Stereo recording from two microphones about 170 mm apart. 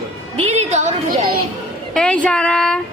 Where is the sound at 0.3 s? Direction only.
40° right (ahead or behind).